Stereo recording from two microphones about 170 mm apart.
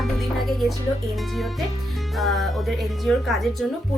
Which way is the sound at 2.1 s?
Centre (ahead or behind).